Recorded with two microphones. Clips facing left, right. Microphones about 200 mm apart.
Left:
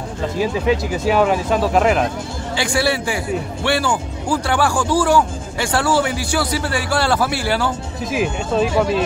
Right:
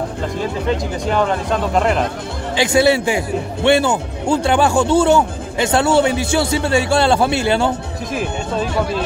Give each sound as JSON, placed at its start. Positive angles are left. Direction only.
{"t": 0.4, "sound": "speech", "side_deg": 5}
{"t": 2.5, "sound": "speech", "side_deg": -20}
{"t": 8.1, "sound": "speech", "side_deg": 5}